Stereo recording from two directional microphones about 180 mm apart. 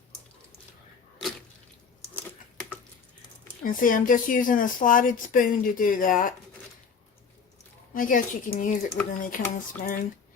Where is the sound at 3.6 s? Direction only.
50° left (ahead or behind).